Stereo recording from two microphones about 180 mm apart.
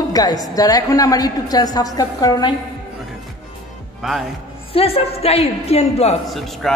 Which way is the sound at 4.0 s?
Centre (ahead or behind).